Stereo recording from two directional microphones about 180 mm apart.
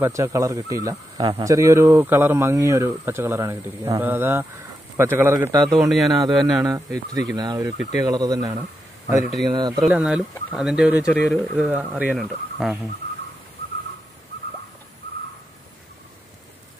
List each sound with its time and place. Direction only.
0.0 s speech: 15° right (ahead or behind)
5.9 s speech: centre (ahead or behind)
6.6 s speech: 20° right (ahead or behind)
9.8 s speech: 5° right (ahead or behind)